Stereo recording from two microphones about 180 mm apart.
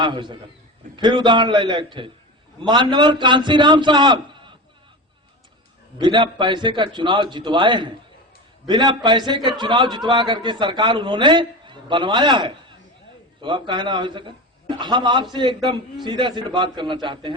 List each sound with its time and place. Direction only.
0.0 s a man's voice: 25° right (ahead or behind)
6.0 s a man's voice: 25° right (ahead or behind)